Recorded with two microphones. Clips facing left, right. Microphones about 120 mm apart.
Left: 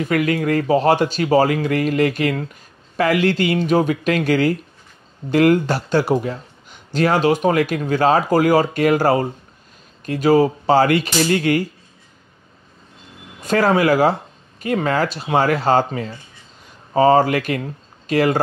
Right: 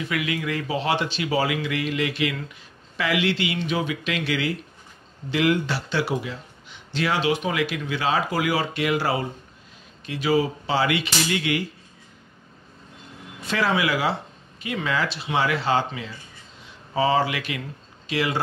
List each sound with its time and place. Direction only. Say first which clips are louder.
0.0 s speech: left 8 dB; 45° left (ahead or behind)
13.4 s speech: left 7 dB; 45° left (ahead or behind)